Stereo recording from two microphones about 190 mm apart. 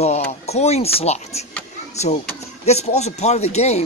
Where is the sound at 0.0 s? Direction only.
35° left (ahead or behind).